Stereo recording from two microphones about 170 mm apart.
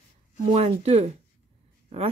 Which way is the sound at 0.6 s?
40° right (ahead or behind).